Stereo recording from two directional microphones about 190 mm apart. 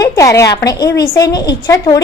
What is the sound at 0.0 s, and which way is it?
A woman's voice, 15° left (ahead or behind).